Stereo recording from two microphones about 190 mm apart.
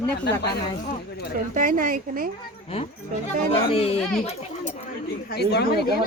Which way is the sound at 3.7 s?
30° left (ahead or behind).